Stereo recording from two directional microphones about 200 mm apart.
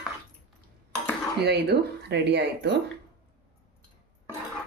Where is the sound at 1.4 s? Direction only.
55° right (ahead or behind).